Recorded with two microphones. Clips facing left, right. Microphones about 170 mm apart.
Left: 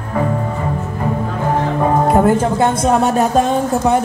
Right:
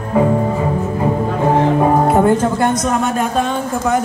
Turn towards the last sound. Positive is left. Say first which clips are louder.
# left 3 dB
turn(degrees=35)  # may be behind; listen again after turning